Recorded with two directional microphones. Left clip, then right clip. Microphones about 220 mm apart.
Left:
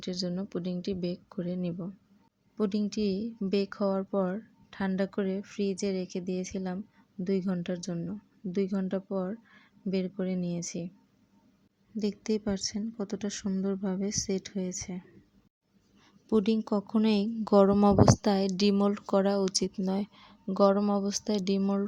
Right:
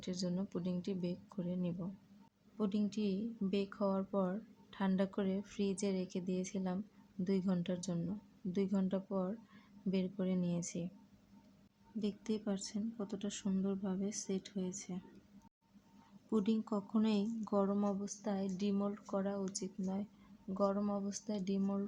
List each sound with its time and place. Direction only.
0.0 s a woman's voice: 20° left (ahead or behind)
11.9 s speech: 25° left (ahead or behind)
16.3 s speech: 30° left (ahead or behind)